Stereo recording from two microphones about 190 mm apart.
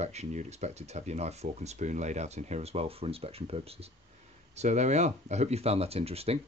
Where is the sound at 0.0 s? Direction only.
35° right (ahead or behind).